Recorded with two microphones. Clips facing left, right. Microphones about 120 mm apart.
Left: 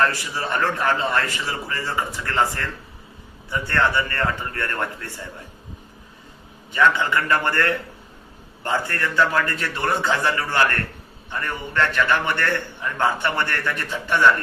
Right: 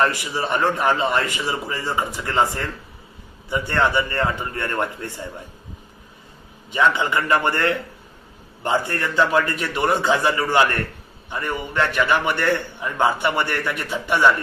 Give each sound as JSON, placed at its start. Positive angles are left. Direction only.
{"t": 0.0, "sound": "a man's voice", "side_deg": -20}
{"t": 6.7, "sound": "a man's voice", "side_deg": -20}